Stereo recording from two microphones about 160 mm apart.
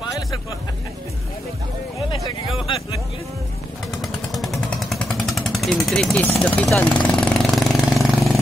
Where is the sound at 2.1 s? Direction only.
30° left (ahead or behind).